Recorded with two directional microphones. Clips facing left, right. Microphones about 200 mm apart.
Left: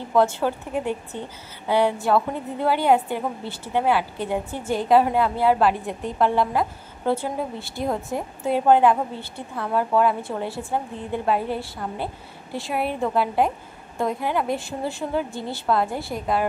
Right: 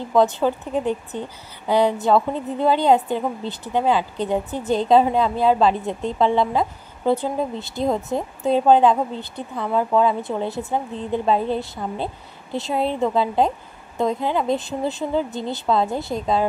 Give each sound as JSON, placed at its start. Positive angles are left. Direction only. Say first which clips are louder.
{"t": 0.1, "sound": "a woman's voice", "louder": "right 2 dB", "side_deg": -15}